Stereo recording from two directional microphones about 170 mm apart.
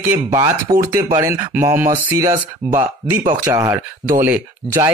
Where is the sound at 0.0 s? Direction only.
15° right (ahead or behind).